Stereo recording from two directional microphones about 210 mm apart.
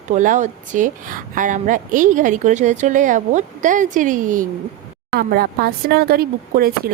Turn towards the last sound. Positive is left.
turn(degrees=-45)  # may be behind; listen again after turning